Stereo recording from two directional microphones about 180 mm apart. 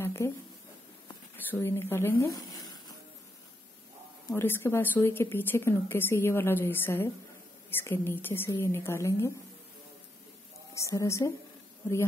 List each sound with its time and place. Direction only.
0.0 s a sound: 15° left (ahead or behind)
1.3 s speech: 10° left (ahead or behind)
4.3 s a woman's voice: 10° left (ahead or behind)
10.7 s a woman's voice: 15° left (ahead or behind)